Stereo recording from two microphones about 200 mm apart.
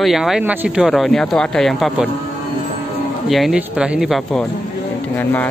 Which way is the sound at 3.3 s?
Centre (ahead or behind).